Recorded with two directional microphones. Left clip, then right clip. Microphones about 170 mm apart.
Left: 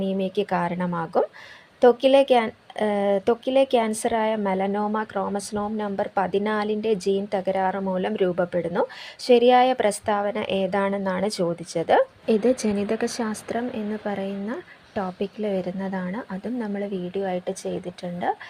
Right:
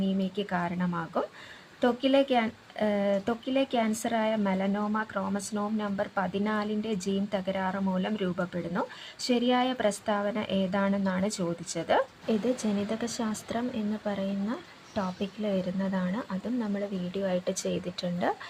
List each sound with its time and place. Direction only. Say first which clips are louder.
0.2 s a woman's voice: left 7 dB; 30° left (ahead or behind); by 17.7 s 5° left (ahead or behind)